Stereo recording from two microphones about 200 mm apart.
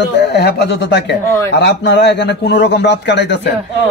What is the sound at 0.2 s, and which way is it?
A man's voice, 55° left (ahead or behind).